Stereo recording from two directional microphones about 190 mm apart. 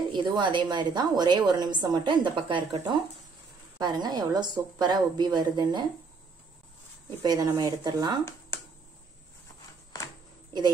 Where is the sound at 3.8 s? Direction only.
20° right (ahead or behind).